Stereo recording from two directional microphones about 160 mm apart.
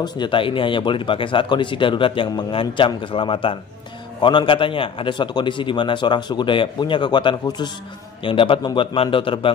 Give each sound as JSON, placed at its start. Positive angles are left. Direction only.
{"t": 0.0, "sound": "a man's voice", "side_deg": 30}